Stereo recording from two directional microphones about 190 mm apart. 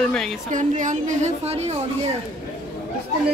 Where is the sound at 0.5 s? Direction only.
40° right (ahead or behind).